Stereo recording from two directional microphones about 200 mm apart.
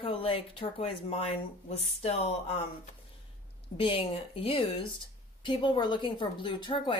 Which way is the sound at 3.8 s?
25° left (ahead or behind).